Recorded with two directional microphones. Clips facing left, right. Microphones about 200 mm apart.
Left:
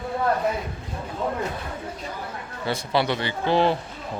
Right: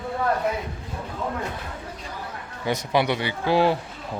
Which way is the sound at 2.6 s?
15° right (ahead or behind).